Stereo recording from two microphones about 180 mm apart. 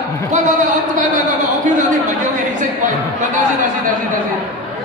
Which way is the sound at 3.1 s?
45° right (ahead or behind).